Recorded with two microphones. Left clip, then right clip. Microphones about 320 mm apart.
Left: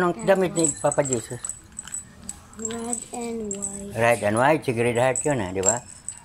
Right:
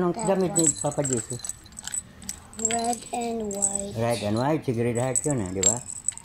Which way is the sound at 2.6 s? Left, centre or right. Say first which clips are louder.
Right 5 dB; centre.